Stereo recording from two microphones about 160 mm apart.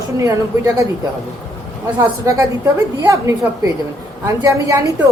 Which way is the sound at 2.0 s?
20° right (ahead or behind).